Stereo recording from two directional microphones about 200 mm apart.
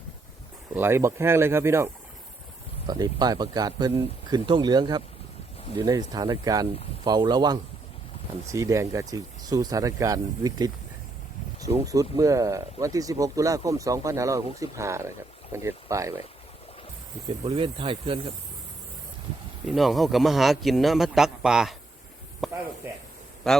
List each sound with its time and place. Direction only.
0.7 s speech: 10° right (ahead or behind)
17.2 s speech: 25° right (ahead or behind)
19.6 s a man's voice: centre (ahead or behind)
22.4 s a sound: centre (ahead or behind)
23.4 s a man's voice: centre (ahead or behind)